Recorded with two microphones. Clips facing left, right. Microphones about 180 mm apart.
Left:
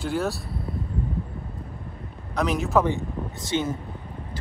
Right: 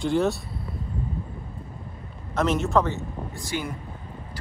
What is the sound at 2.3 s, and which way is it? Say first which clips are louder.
Speech: even; centre (ahead or behind).